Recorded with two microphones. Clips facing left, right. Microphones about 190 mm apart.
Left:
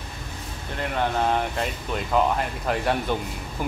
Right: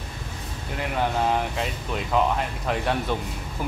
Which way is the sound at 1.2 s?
Centre (ahead or behind).